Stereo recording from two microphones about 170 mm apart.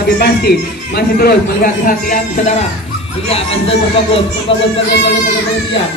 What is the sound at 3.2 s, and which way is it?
Music, 35° left (ahead or behind).